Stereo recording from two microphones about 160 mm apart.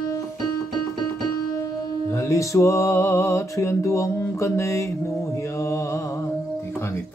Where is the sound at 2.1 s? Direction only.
20° left (ahead or behind).